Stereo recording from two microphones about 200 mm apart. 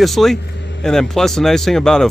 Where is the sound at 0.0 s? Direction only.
Centre (ahead or behind).